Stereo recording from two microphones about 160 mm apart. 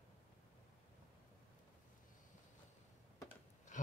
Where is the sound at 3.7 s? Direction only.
50° left (ahead or behind).